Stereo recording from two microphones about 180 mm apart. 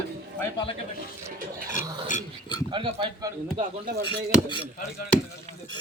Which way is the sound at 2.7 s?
25° right (ahead or behind).